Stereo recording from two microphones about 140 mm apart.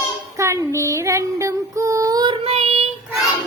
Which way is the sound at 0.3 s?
20° right (ahead or behind).